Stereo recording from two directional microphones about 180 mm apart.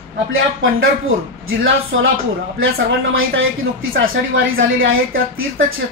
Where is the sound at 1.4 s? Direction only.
90° right.